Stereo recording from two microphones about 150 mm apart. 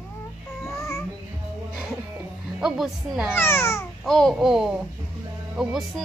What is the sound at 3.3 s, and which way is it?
Speech, 15° left (ahead or behind).